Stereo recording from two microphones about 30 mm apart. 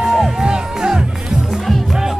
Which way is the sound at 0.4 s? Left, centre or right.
Right.